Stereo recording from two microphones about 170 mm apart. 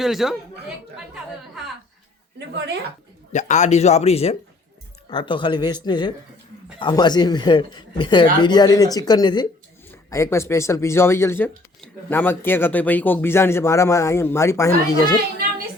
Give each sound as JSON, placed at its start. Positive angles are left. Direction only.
{"t": 0.0, "sound": "speech", "side_deg": 0}
{"t": 3.3, "sound": "speech", "side_deg": 45}